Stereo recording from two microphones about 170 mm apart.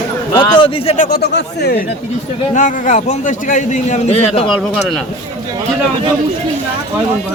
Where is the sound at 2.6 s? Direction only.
50° left (ahead or behind).